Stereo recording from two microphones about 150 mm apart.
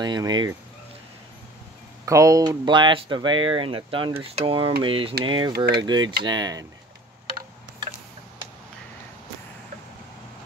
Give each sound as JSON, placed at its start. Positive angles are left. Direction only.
{"t": 0.0, "sound": "speech", "side_deg": -30}
{"t": 2.0, "sound": "speech", "side_deg": -20}